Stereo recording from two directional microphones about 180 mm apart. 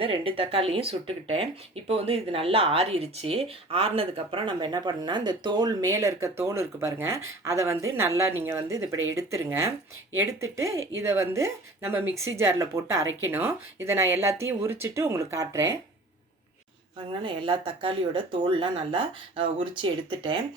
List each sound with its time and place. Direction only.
0.0 s speech: 30° right (ahead or behind)
17.1 s speech: 30° right (ahead or behind)